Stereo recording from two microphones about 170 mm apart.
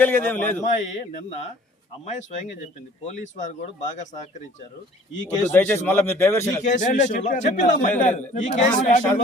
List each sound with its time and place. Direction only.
0.0 s a man's voice: 10° left (ahead or behind)
0.6 s a man's voice: 40° left (ahead or behind)
5.5 s a man's voice: 15° left (ahead or behind)
6.6 s a man's voice: 45° left (ahead or behind)